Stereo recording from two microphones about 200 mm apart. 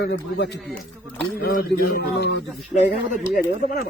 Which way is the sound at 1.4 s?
50° left (ahead or behind).